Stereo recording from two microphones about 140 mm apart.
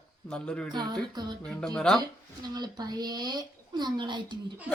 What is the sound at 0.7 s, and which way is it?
Speech, 30° right (ahead or behind).